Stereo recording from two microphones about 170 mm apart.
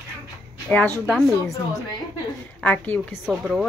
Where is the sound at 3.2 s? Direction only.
5° right (ahead or behind).